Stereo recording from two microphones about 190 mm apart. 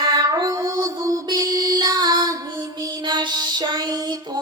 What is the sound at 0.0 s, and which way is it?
Music, 20° right (ahead or behind).